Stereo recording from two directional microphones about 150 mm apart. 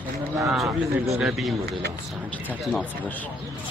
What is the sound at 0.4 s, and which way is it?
Speech, centre (ahead or behind).